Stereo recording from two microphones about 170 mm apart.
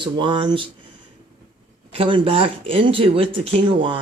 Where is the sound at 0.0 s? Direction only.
25° right (ahead or behind).